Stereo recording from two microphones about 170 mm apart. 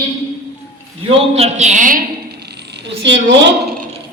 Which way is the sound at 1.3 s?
40° right (ahead or behind).